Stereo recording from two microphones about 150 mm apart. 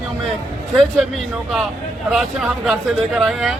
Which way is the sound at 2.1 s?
Centre (ahead or behind).